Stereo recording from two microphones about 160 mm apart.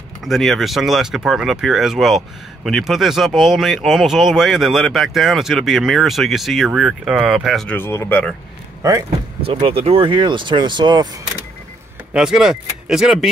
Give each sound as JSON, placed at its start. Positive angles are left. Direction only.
{"t": 0.2, "sound": "speech", "side_deg": 0}
{"t": 7.7, "sound": "speech", "side_deg": 15}
{"t": 9.4, "sound": "speech", "side_deg": -35}
{"t": 12.1, "sound": "speech", "side_deg": -5}